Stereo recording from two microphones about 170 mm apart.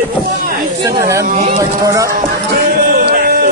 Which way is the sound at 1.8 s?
20° right (ahead or behind).